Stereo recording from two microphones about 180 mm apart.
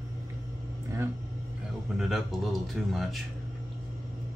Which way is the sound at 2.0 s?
Centre (ahead or behind).